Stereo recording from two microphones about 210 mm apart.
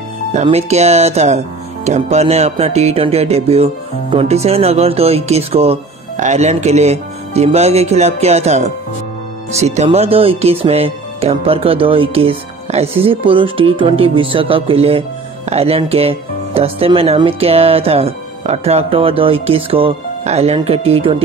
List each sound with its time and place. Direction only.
0.3 s speech: 30° right (ahead or behind)